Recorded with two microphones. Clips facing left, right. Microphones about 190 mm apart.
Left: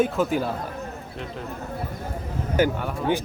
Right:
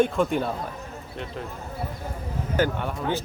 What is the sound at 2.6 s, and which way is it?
Speech, 10° left (ahead or behind).